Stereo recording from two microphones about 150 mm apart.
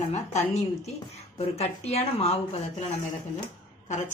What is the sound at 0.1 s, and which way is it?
Speech, 50° left (ahead or behind).